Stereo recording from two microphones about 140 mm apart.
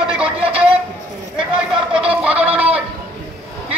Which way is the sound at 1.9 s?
10° right (ahead or behind).